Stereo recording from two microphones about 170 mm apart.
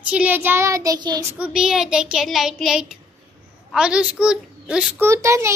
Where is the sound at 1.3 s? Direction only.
5° right (ahead or behind).